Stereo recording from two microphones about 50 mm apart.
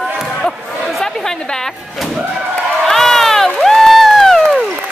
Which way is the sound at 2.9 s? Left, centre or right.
Centre.